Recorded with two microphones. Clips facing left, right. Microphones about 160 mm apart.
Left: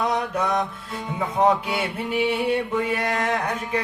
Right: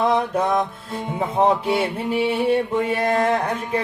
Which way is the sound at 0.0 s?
30° right (ahead or behind).